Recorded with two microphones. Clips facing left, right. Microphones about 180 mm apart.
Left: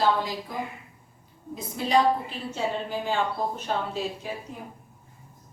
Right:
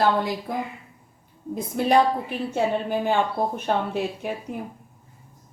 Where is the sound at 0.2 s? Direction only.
60° right (ahead or behind).